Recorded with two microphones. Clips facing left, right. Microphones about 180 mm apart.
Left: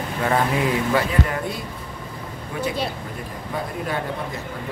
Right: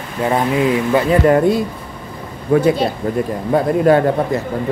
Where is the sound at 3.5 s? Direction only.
65° right (ahead or behind).